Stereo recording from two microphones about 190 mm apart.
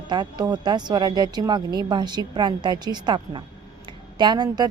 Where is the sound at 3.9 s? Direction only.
25° right (ahead or behind).